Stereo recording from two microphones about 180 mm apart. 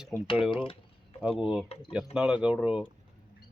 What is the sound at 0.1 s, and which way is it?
Speech, centre (ahead or behind).